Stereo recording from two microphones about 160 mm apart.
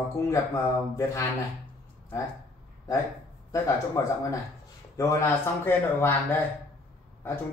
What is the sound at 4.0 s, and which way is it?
A man's voice, 20° left (ahead or behind).